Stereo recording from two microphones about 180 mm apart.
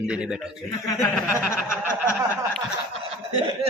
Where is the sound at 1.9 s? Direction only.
10° left (ahead or behind).